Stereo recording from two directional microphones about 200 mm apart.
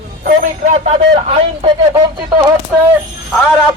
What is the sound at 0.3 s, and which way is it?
Speech, 40° right (ahead or behind).